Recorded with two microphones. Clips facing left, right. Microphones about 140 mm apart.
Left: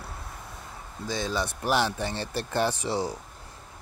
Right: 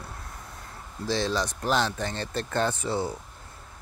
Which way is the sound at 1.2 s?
5° left (ahead or behind).